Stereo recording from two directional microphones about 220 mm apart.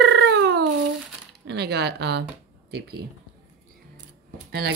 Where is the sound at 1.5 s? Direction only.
50° right (ahead or behind).